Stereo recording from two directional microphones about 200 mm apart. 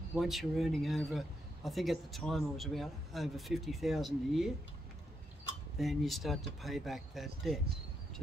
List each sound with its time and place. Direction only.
0.1 s speech: centre (ahead or behind)
5.8 s speech: centre (ahead or behind)